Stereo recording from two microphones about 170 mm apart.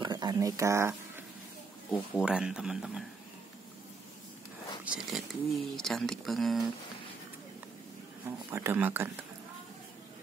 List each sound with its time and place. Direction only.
0.0 s a sound: 25° right (ahead or behind)
1.9 s speech: 5° right (ahead or behind)
4.8 s speech: 5° right (ahead or behind)
8.5 s speech: 15° right (ahead or behind)